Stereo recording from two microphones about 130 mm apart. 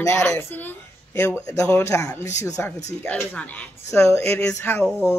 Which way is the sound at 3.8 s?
20° left (ahead or behind).